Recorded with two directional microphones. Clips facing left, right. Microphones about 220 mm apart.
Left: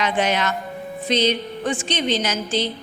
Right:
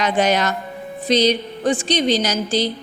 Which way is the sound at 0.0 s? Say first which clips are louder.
Right 3 dB; 40° right (ahead or behind).